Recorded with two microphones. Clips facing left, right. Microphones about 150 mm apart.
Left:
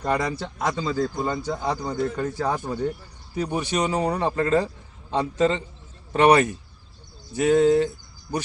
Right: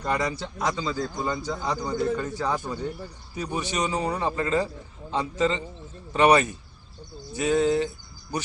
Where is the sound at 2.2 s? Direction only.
50° left (ahead or behind).